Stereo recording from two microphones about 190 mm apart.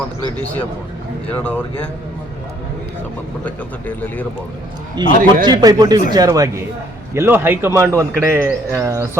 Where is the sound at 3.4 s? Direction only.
10° left (ahead or behind).